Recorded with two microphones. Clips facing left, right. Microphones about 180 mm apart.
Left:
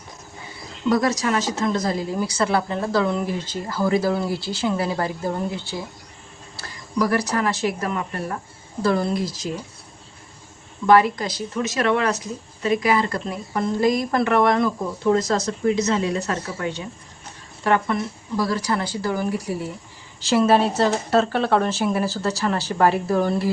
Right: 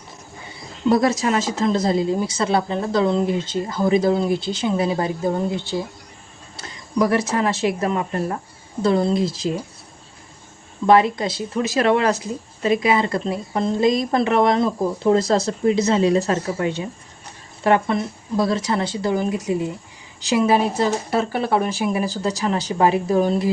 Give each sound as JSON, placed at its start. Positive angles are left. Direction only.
{"t": 0.9, "sound": "speech", "side_deg": -25}
{"t": 10.8, "sound": "a woman's voice", "side_deg": -25}